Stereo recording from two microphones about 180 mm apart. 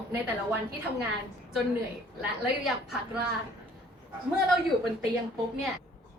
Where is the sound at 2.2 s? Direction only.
Centre (ahead or behind).